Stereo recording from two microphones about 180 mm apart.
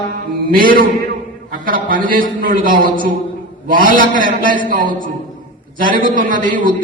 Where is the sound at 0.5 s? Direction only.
50° right (ahead or behind).